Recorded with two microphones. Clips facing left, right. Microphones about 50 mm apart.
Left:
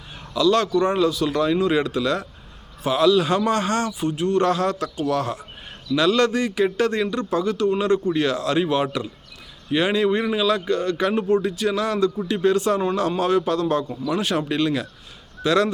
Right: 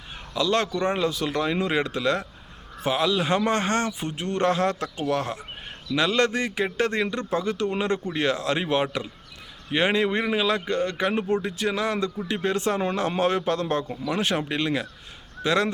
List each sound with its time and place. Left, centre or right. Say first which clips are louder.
0.3 s speech: left 5 dB; right